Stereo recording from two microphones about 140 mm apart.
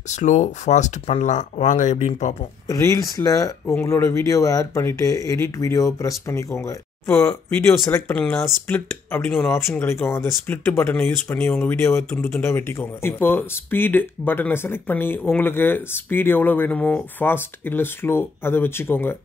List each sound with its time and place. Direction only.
0.1 s speech: 60° left (ahead or behind)
2.7 s speech: 25° left (ahead or behind)